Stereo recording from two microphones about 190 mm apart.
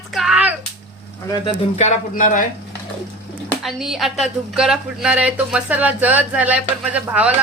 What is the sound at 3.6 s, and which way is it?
Speech, centre (ahead or behind).